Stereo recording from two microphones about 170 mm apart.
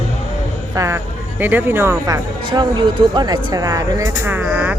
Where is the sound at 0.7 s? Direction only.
20° right (ahead or behind).